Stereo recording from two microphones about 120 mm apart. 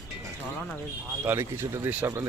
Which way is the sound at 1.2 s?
20° right (ahead or behind).